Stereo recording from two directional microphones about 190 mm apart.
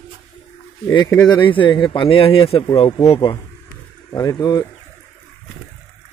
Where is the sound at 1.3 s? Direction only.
25° left (ahead or behind).